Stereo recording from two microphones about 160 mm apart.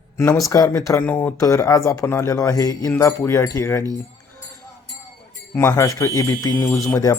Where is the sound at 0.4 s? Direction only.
20° left (ahead or behind).